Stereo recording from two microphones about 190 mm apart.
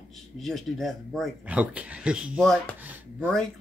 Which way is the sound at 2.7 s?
10° right (ahead or behind).